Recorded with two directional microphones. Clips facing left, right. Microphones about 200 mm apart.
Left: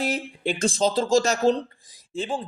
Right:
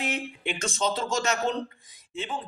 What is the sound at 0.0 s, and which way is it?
Speech, 35° left (ahead or behind).